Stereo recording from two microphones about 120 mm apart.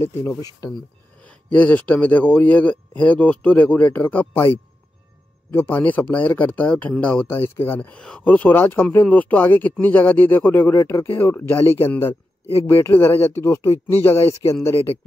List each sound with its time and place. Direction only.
0.0 s speech: 20° left (ahead or behind)
1.2 s speech: 10° left (ahead or behind)
5.5 s speech: 15° left (ahead or behind)